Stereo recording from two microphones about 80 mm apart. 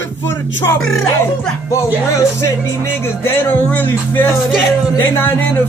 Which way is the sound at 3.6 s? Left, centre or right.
Left.